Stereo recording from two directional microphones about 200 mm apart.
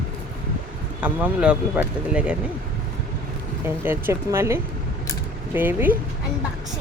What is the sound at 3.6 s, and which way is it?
Speech, 10° right (ahead or behind).